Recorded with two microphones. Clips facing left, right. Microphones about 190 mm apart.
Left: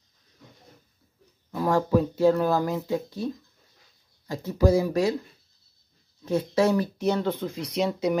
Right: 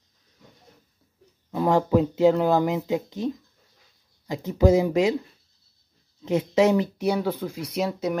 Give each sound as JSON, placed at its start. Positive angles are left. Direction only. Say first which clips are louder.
{"t": 1.5, "sound": "speech", "louder": "right 2 dB", "side_deg": -20}
{"t": 4.3, "sound": "speech", "louder": "right 2 dB", "side_deg": -20}
{"t": 6.2, "sound": "speech", "louder": "right 3 dB", "side_deg": -20}